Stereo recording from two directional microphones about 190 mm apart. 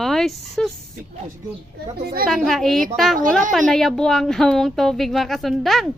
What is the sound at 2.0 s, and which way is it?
Speech, 55° right (ahead or behind).